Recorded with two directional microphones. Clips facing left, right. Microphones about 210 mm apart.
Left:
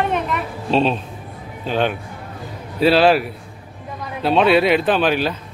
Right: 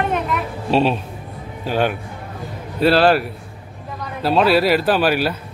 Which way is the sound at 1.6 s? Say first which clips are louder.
Even; 10° right (ahead or behind).